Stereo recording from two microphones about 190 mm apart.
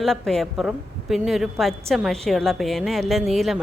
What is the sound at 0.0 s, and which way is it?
A woman's voice, centre (ahead or behind).